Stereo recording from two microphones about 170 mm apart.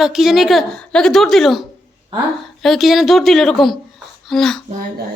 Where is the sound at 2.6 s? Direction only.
Centre (ahead or behind).